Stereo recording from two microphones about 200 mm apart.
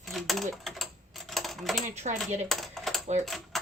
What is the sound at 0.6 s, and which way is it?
Speech, centre (ahead or behind).